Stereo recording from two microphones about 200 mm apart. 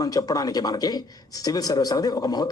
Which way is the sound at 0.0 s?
20° left (ahead or behind).